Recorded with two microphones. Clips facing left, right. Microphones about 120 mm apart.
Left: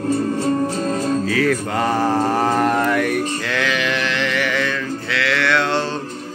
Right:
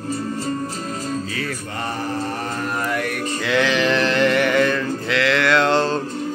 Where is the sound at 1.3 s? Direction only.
90° left; by 3.0 s 70° left (ahead or behind).